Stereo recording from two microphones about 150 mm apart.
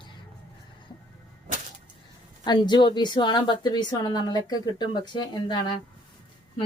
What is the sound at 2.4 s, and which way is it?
Speech, 30° left (ahead or behind).